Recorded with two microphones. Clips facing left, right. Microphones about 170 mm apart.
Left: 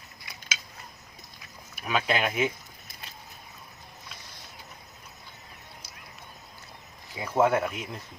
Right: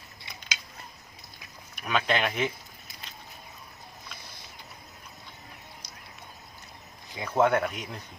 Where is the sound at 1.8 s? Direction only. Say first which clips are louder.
Even; 5° left (ahead or behind).